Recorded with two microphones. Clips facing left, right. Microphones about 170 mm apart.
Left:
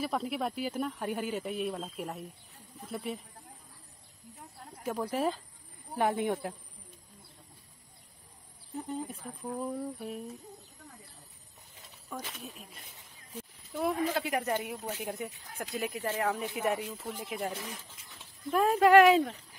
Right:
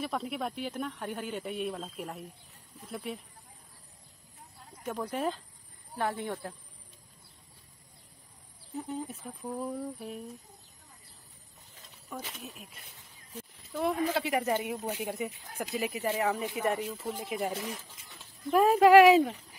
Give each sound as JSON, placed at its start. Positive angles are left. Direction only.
{"t": 0.0, "sound": "speech", "side_deg": 0}
{"t": 4.8, "sound": "speech", "side_deg": 5}
{"t": 5.9, "sound": "speech", "side_deg": 15}
{"t": 8.7, "sound": "speech", "side_deg": 0}
{"t": 12.1, "sound": "speech", "side_deg": 0}
{"t": 14.8, "sound": "speech", "side_deg": -15}
{"t": 15.0, "sound": "speech", "side_deg": 0}